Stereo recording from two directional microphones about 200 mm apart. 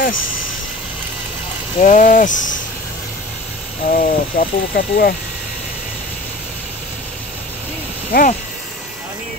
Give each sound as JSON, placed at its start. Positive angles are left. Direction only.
{"t": 1.8, "sound": "speech", "side_deg": 40}
{"t": 3.9, "sound": "speech", "side_deg": 45}
{"t": 8.1, "sound": "speech", "side_deg": 45}